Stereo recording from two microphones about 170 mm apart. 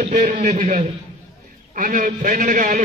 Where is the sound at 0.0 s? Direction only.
50° right (ahead or behind).